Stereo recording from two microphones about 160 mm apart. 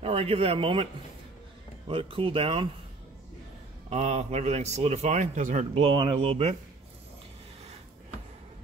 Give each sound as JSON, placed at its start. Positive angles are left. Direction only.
{"t": 0.0, "sound": "a man's voice", "side_deg": -40}
{"t": 1.9, "sound": "speech", "side_deg": -35}
{"t": 3.9, "sound": "a man's voice", "side_deg": -45}
{"t": 5.9, "sound": "speech", "side_deg": -35}